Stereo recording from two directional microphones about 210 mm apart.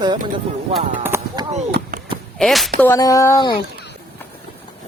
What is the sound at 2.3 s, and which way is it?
Speech, centre (ahead or behind).